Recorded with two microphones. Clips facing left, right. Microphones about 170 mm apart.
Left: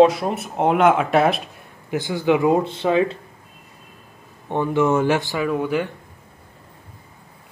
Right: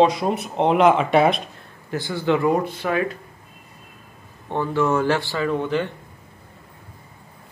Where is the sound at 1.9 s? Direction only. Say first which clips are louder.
Left 2 dB; 15° left (ahead or behind).